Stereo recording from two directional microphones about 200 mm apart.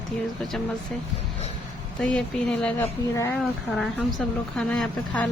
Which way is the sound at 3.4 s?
Centre (ahead or behind).